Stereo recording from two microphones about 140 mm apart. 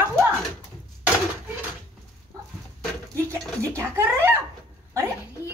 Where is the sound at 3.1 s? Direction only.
20° right (ahead or behind).